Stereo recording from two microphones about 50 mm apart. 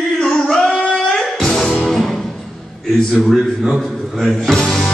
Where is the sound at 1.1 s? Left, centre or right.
Centre.